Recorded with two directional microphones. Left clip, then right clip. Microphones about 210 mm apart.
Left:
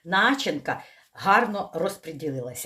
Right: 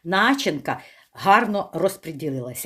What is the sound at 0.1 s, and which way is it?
Speech, 55° right (ahead or behind).